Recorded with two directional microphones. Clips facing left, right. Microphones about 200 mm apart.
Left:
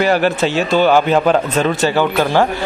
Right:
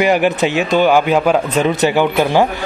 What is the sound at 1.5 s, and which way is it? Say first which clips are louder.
Speech: right 1 dB; 20° right (ahead or behind).